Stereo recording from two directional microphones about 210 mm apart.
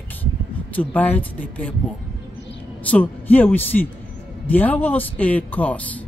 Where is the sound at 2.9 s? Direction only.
10° left (ahead or behind).